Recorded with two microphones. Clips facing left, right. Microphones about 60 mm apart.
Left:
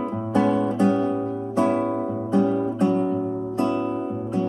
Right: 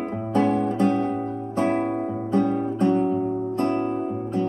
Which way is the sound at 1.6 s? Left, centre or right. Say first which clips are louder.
Left 1 dB; right.